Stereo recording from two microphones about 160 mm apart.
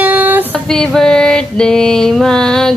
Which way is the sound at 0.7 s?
5° left (ahead or behind).